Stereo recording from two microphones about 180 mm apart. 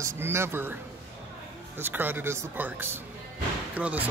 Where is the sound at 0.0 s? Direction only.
15° right (ahead or behind).